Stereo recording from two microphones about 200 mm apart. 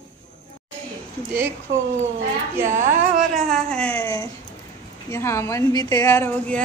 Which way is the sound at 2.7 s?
40° right (ahead or behind).